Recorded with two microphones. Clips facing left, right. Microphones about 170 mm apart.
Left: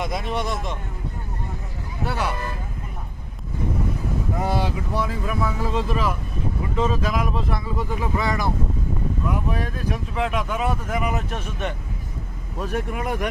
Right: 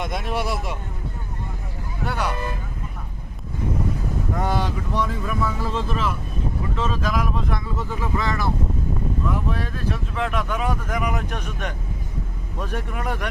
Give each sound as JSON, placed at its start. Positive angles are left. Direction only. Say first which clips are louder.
{"t": 0.0, "sound": "speech", "louder": "even", "side_deg": 0}
{"t": 2.0, "sound": "speech", "louder": "even", "side_deg": 5}
{"t": 4.4, "sound": "speech", "louder": "even", "side_deg": 10}